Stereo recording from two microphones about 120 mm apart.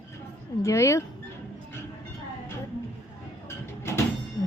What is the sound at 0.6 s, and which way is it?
Speech, 25° left (ahead or behind).